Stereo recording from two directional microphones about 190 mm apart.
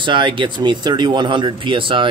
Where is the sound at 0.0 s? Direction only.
25° right (ahead or behind).